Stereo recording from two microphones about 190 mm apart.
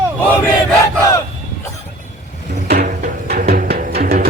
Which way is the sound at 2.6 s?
50° right (ahead or behind).